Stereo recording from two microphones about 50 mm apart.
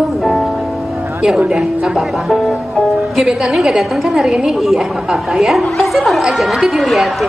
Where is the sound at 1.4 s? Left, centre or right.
Centre.